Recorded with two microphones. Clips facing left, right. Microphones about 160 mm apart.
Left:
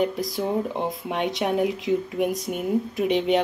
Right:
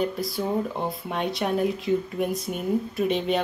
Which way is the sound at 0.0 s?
15° left (ahead or behind).